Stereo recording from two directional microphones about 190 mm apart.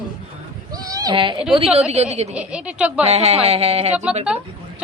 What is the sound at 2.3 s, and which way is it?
Speech, 5° right (ahead or behind).